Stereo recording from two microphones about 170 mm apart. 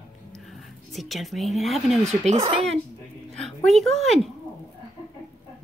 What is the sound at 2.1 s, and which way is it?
Speech, 40° right (ahead or behind).